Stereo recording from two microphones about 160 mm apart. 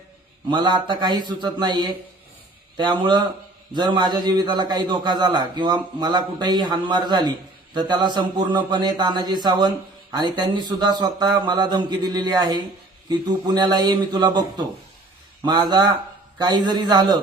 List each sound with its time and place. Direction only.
0.5 s a man's voice: 30° right (ahead or behind)